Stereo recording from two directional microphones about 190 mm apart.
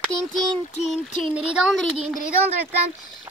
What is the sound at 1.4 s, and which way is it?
Speech, centre (ahead or behind).